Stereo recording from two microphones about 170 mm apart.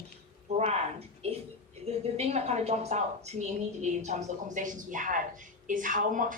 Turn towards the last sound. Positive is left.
turn(degrees=-50)  # may be behind; listen again after turning